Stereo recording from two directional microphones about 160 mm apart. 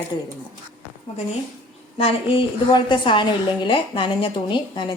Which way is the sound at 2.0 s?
35° left (ahead or behind).